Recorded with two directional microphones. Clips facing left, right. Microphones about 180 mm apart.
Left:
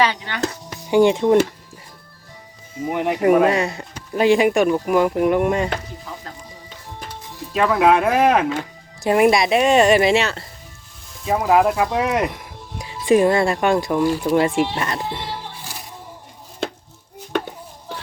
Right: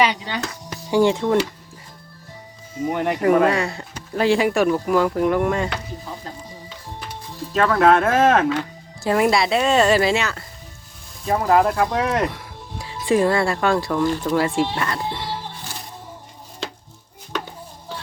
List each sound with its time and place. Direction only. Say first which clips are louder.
0.0 s speech: even; 20° right (ahead or behind)
0.9 s speech: left 3 dB; 20° left (ahead or behind)
2.8 s speech: even; 5° left (ahead or behind)
3.2 s speech: left 2 dB; 20° left (ahead or behind)
7.5 s speech: even; 10° left (ahead or behind)
11.3 s speech: left 1 dB; 10° left (ahead or behind)
16.6 s music: left 6 dB; 55° left (ahead or behind)